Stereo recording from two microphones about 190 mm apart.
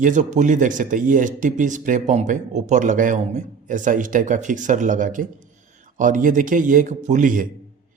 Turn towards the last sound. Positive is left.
turn(degrees=-45)  # may be behind; listen again after turning